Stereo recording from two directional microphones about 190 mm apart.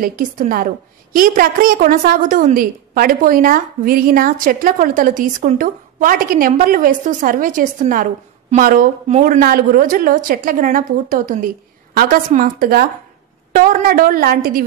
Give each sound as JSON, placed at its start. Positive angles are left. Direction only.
{"t": 0.0, "sound": "a woman's voice", "side_deg": -45}